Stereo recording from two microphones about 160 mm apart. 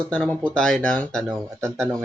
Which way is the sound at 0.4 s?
5° left (ahead or behind).